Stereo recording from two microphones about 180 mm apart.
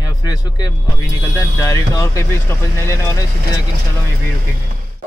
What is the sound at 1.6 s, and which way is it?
Speech, 20° left (ahead or behind).